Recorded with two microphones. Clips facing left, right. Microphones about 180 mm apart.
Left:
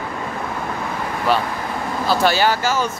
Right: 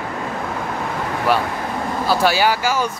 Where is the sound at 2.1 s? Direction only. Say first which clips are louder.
Even; 10° right (ahead or behind).